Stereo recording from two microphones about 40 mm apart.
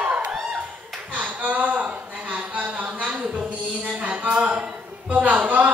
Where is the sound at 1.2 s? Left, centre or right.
Right.